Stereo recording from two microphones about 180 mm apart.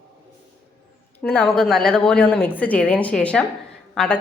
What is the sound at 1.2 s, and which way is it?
A woman's voice, 5° left (ahead or behind).